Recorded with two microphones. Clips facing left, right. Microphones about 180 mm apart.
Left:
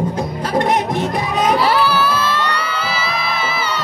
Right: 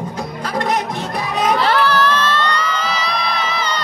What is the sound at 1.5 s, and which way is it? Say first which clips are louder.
Music: right 1 dB; 10° left (ahead or behind).